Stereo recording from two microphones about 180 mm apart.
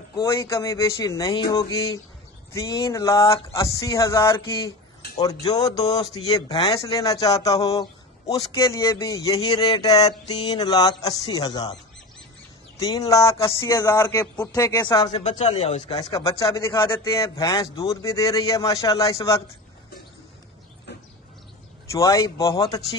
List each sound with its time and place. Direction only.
0.1 s a man's voice: 15° left (ahead or behind)
15.1 s speech: 35° left (ahead or behind)
15.9 s a man's voice: 20° left (ahead or behind)
21.9 s a man's voice: 20° left (ahead or behind)